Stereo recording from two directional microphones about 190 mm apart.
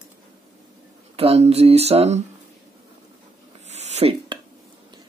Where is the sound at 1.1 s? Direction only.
30° right (ahead or behind).